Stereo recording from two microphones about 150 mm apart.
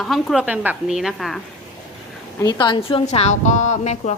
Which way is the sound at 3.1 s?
50° left (ahead or behind).